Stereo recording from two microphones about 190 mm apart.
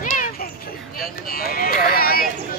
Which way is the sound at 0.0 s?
40° left (ahead or behind).